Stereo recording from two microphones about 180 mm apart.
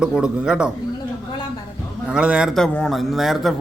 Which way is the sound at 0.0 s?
5° right (ahead or behind).